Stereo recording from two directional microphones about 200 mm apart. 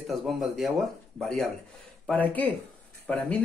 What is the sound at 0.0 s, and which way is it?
Speech, centre (ahead or behind).